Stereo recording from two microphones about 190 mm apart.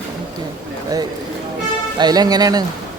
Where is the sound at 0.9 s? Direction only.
20° right (ahead or behind).